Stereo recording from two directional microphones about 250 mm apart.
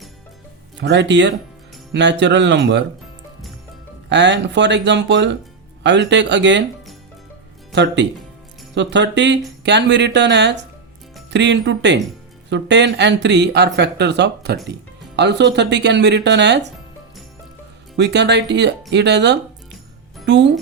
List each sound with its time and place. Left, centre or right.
0.8 s speech: right
4.1 s speech: right
7.7 s speech: right
17.9 s speech: right